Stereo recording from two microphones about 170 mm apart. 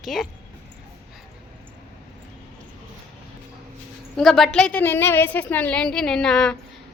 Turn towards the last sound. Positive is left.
turn(degrees=5)  # may be behind; listen again after turning